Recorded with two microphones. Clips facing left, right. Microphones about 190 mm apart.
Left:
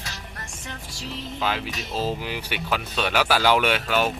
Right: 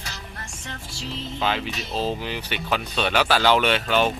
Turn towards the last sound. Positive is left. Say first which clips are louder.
# right 2 dB
turn(degrees=5)  # may be behind; listen again after turning